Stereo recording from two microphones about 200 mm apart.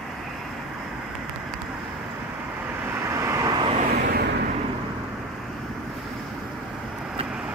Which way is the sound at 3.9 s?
50° right (ahead or behind).